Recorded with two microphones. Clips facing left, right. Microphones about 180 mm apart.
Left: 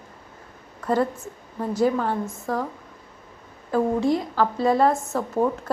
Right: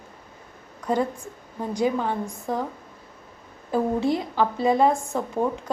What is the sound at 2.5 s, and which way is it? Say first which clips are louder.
Speech: left 1 dB; 25° right (ahead or behind).